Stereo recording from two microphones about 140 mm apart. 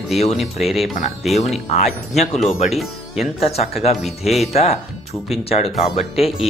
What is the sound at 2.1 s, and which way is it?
Speech, 55° left (ahead or behind).